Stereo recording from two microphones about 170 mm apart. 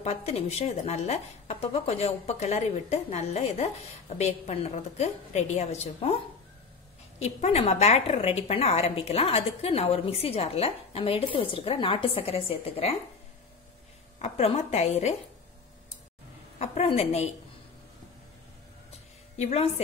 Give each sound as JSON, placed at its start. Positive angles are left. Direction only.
{"t": 0.0, "sound": "a woman's voice", "side_deg": 40}
{"t": 7.2, "sound": "a woman's voice", "side_deg": 40}
{"t": 14.2, "sound": "a woman's voice", "side_deg": 35}
{"t": 16.5, "sound": "a woman's voice", "side_deg": 40}
{"t": 19.3, "sound": "a woman's voice", "side_deg": 40}